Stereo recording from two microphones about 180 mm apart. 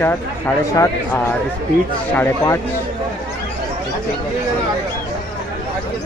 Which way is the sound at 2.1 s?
10° left (ahead or behind).